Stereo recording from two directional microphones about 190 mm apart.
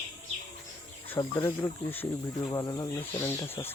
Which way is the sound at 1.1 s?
15° left (ahead or behind).